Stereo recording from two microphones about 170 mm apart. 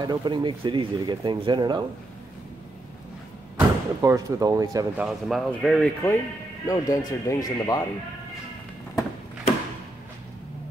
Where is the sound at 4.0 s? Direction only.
20° right (ahead or behind).